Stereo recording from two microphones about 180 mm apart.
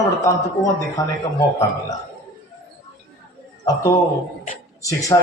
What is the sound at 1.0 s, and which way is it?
Speech, 20° left (ahead or behind).